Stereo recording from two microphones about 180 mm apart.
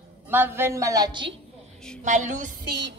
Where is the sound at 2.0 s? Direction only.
45° right (ahead or behind).